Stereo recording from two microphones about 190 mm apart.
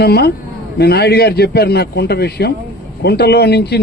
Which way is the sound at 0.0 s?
55° left (ahead or behind).